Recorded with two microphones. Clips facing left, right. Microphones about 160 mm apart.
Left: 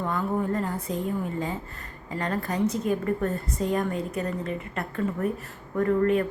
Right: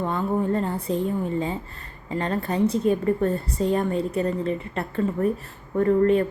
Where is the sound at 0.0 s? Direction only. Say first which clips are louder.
Right 3 dB; 25° right (ahead or behind).